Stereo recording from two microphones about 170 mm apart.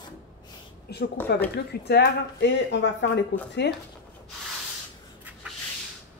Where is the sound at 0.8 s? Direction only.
70° left (ahead or behind).